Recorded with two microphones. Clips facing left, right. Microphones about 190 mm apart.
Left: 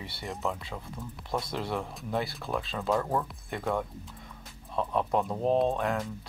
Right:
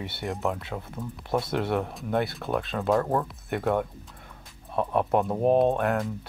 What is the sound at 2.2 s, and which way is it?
Speech, centre (ahead or behind).